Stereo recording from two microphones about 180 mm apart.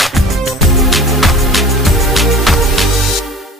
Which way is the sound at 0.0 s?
Centre (ahead or behind).